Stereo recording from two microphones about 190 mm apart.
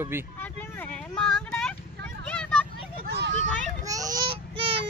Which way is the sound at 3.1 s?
65° right (ahead or behind).